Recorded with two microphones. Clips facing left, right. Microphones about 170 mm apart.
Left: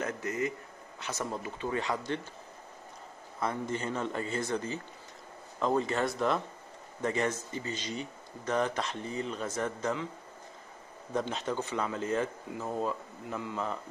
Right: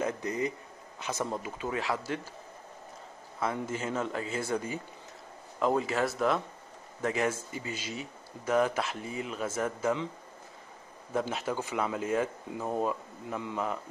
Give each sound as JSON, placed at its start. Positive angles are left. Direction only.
{"t": 0.0, "sound": "a sound", "side_deg": -15}
{"t": 0.9, "sound": "speech", "side_deg": -15}
{"t": 1.7, "sound": "speech", "side_deg": -5}
{"t": 3.3, "sound": "speech", "side_deg": -5}
{"t": 11.1, "sound": "speech", "side_deg": -5}